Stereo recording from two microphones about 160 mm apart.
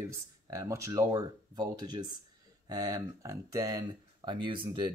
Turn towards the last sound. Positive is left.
turn(degrees=-30)  # may be behind; listen again after turning